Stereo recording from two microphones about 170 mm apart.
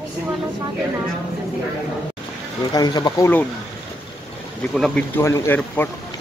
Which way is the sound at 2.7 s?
25° left (ahead or behind).